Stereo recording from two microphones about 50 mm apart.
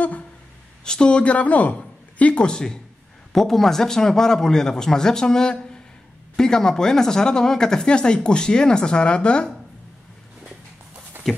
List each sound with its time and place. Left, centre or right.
0.8 s speech: centre
11.3 s speech: centre